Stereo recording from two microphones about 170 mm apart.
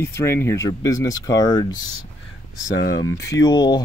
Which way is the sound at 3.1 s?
90° left.